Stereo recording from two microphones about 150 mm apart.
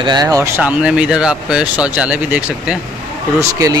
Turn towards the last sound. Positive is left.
turn(degrees=-20)  # may be behind; listen again after turning